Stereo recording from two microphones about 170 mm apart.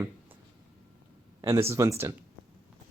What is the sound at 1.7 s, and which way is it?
Speech, 15° right (ahead or behind).